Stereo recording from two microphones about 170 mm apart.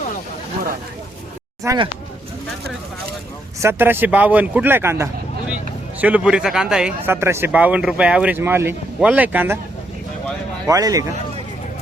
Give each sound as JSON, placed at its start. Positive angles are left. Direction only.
{"t": 1.6, "sound": "speech", "side_deg": -20}
{"t": 3.6, "sound": "speech", "side_deg": -15}
{"t": 10.7, "sound": "speech", "side_deg": -20}